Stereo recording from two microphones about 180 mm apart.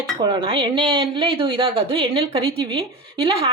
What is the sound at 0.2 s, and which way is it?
Speech, 25° right (ahead or behind).